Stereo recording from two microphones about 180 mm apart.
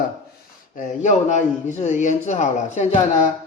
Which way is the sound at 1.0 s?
40° left (ahead or behind).